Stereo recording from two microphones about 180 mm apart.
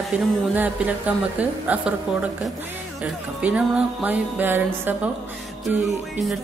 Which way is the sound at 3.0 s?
5° right (ahead or behind).